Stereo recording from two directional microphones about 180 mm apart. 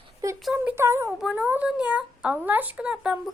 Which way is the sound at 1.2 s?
5° right (ahead or behind).